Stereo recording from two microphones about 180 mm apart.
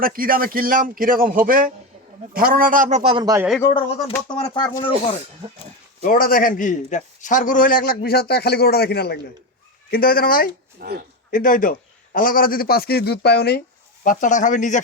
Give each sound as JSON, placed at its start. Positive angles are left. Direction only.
{"t": 0.0, "sound": "speech", "side_deg": -50}
{"t": 3.0, "sound": "a man's voice", "side_deg": -35}
{"t": 3.6, "sound": "speech", "side_deg": 25}
{"t": 6.0, "sound": "a man's voice", "side_deg": 55}
{"t": 10.8, "sound": "speech", "side_deg": -60}
{"t": 11.3, "sound": "a man's voice", "side_deg": 50}
{"t": 14.0, "sound": "a man's voice", "side_deg": 45}